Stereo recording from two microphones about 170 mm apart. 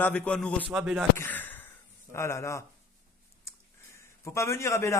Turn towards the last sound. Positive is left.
turn(degrees=15)  # may be behind; listen again after turning